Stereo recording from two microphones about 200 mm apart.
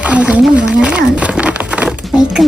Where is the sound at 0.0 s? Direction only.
5° right (ahead or behind).